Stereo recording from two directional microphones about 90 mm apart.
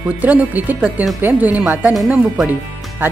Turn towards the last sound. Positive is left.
turn(degrees=-20)  # may be behind; listen again after turning